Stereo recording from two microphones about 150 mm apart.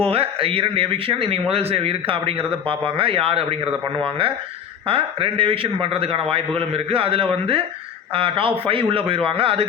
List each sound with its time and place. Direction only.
0.0 s a man's voice: 40° right (ahead or behind)
4.9 s a man's voice: 40° right (ahead or behind)